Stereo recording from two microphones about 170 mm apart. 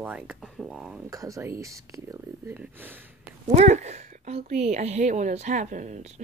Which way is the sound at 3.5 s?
45° right (ahead or behind).